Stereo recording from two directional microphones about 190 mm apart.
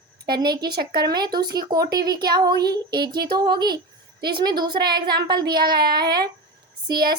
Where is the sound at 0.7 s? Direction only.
55° right (ahead or behind).